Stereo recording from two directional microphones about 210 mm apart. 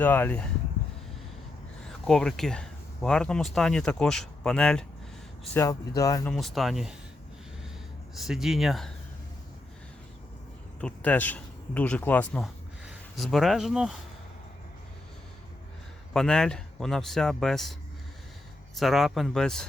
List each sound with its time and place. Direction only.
0.0 s speech: 10° left (ahead or behind)
2.0 s speech: 5° left (ahead or behind)
5.5 s speech: 15° left (ahead or behind)
6.3 s speech: centre (ahead or behind)
8.1 s speech: centre (ahead or behind)
10.8 s speech: 5° left (ahead or behind)
16.1 s speech: 5° left (ahead or behind)
18.8 s speech: centre (ahead or behind)